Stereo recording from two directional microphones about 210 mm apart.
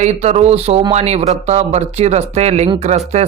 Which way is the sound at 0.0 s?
30° right (ahead or behind).